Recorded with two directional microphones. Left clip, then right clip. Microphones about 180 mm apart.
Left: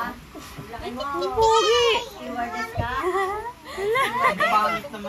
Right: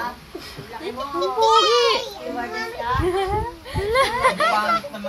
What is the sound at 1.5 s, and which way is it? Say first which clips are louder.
Speech: right 3 dB; 30° right (ahead or behind).